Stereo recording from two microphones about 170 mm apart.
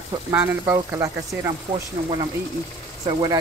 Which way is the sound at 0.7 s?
20° right (ahead or behind).